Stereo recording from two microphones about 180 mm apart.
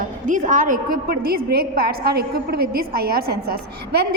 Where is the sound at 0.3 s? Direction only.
45° right (ahead or behind).